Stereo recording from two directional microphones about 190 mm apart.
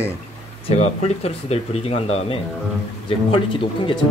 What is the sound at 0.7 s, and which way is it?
Speech, 35° left (ahead or behind).